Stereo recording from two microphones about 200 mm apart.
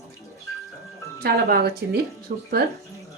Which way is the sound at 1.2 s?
50° right (ahead or behind).